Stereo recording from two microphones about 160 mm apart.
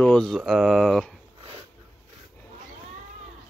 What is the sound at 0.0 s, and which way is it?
Speech, 5° left (ahead or behind).